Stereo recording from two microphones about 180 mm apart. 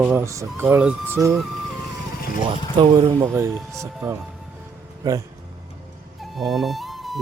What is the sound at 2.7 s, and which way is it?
Speech, 30° right (ahead or behind).